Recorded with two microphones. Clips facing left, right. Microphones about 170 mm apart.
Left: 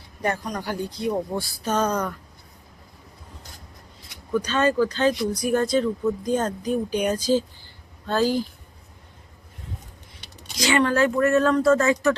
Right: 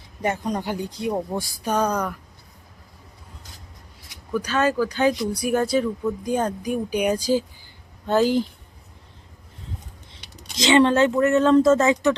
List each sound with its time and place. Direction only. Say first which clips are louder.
0.2 s speech: right 2 dB; 20° right (ahead or behind)
4.3 s speech: even; 5° right (ahead or behind)
10.6 s speech: right 4 dB; 25° right (ahead or behind)